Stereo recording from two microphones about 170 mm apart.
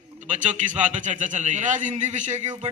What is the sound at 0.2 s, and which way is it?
A man's voice, 45° right (ahead or behind).